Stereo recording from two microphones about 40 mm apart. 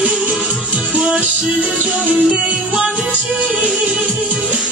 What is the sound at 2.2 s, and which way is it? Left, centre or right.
Music, right.